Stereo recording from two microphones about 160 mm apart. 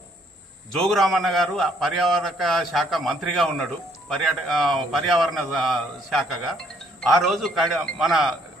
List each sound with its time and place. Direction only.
0.8 s a man's voice: centre (ahead or behind)